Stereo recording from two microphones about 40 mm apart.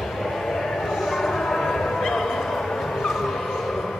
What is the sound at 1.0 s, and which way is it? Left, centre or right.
Bow-wow, centre.